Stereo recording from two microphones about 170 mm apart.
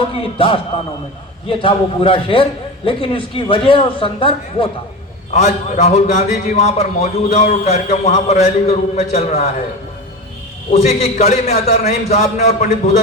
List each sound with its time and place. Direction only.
0.3 s a man's voice: 30° left (ahead or behind)
5.3 s a man's voice: 45° left (ahead or behind)
10.7 s a man's voice: 40° left (ahead or behind)